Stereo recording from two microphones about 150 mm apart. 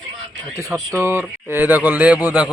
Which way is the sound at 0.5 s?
20° right (ahead or behind).